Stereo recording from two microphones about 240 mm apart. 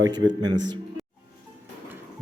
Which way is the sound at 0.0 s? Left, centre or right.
Centre.